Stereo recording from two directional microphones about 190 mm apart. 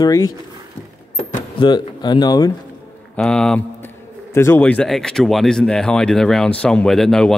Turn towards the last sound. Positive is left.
turn(degrees=0)  # may be behind; listen again after turning